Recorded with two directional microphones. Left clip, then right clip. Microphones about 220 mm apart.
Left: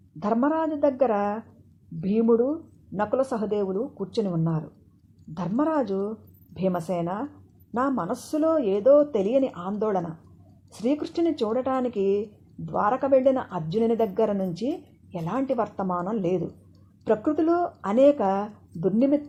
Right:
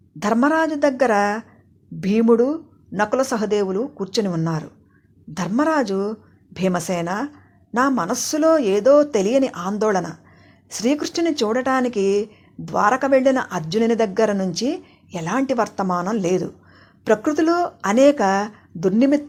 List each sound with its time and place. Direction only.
0.3 s speech: 25° right (ahead or behind)